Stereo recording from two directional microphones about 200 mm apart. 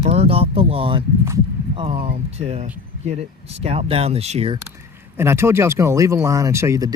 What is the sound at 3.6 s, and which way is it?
Speech, 30° right (ahead or behind).